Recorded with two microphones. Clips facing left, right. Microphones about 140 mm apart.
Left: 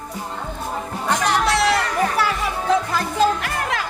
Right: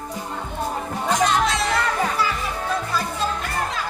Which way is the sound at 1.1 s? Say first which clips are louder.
Left 1 dB; 65° left (ahead or behind).